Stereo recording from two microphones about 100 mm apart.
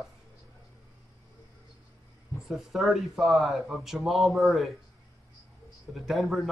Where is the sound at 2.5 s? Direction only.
Centre (ahead or behind).